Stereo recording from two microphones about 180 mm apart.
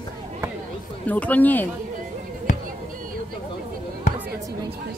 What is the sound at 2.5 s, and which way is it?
Basketball bounce, 45° left (ahead or behind).